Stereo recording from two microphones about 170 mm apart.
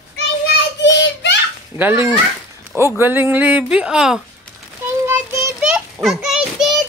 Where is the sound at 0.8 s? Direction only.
90° left.